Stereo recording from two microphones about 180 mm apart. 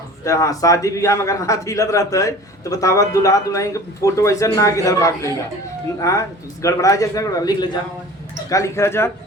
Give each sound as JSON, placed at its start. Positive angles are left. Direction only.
{"t": 0.3, "sound": "a man's voice", "side_deg": 20}